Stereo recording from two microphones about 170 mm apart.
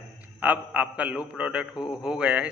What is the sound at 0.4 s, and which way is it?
A man's voice, 10° right (ahead or behind).